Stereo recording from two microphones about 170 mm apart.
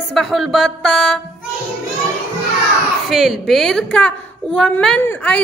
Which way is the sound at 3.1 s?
Centre (ahead or behind).